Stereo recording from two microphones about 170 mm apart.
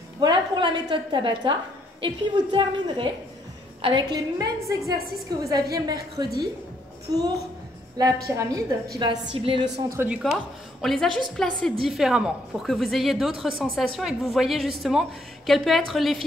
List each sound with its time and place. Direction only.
0.2 s a woman's voice: 30° right (ahead or behind)
9.8 s a woman's voice: 10° right (ahead or behind)